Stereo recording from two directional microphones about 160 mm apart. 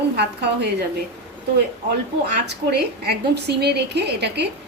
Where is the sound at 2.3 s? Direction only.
90° right.